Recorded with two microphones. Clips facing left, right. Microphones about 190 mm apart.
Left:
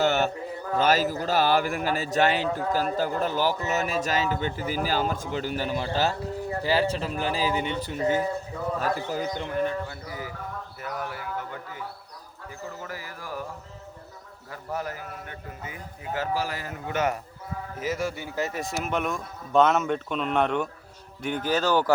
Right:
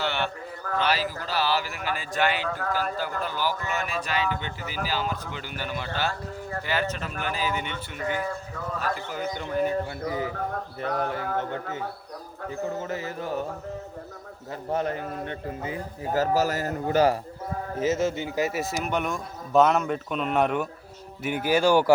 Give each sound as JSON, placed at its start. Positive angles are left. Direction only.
{"t": 0.0, "sound": "a sound", "side_deg": 45}
{"t": 0.8, "sound": "speech", "side_deg": 45}
{"t": 2.5, "sound": "speech", "side_deg": 20}
{"t": 2.7, "sound": "a man's voice", "side_deg": 40}
{"t": 8.3, "sound": "a man's voice", "side_deg": 15}
{"t": 9.7, "sound": "a man's voice", "side_deg": -25}
{"t": 12.8, "sound": "a man's voice", "side_deg": -25}
{"t": 14.5, "sound": "a man's voice", "side_deg": -25}
{"t": 16.0, "sound": "a man's voice", "side_deg": -40}